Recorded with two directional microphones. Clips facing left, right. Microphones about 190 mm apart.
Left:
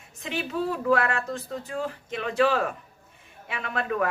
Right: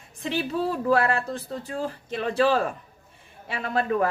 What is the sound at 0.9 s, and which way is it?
A woman's voice, 35° right (ahead or behind).